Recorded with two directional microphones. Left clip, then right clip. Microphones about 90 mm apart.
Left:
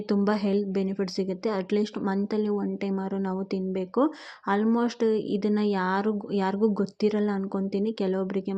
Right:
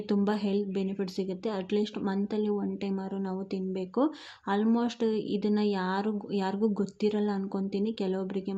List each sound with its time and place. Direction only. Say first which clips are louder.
0.1 s speech: left 4 dB; 25° left (ahead or behind)
0.3 s a woman's voice: left 4 dB; 35° left (ahead or behind)
3.7 s speech: left 3 dB; 25° left (ahead or behind)